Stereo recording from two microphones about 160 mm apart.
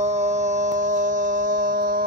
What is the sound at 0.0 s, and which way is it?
Music, 45° right (ahead or behind).